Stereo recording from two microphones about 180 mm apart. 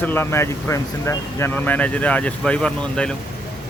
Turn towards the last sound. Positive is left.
turn(degrees=5)  # may be behind; listen again after turning